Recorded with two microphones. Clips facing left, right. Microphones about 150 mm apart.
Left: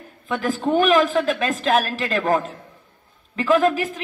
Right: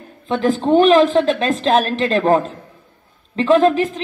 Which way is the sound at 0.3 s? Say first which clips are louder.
Right 6 dB; 25° right (ahead or behind).